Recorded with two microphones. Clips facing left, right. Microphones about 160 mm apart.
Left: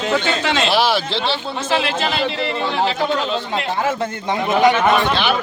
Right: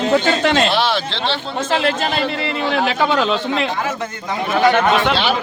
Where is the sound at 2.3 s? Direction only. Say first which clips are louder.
Right 1 dB; 70° right (ahead or behind); by 3.6 s 90° right.